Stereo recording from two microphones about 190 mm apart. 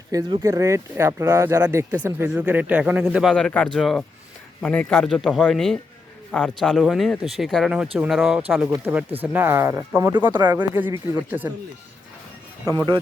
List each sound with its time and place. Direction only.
0.1 s speech: 20° right (ahead or behind)
12.7 s speech: 25° right (ahead or behind)